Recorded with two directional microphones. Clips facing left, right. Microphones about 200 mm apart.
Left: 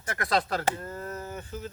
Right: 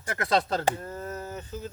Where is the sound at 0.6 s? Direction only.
15° right (ahead or behind).